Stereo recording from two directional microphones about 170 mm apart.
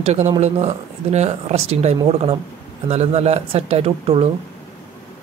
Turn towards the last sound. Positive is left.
turn(degrees=-35)  # may be behind; listen again after turning